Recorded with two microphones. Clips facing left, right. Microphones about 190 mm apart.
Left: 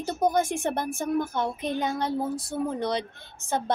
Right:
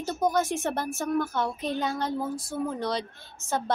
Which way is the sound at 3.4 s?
20° left (ahead or behind).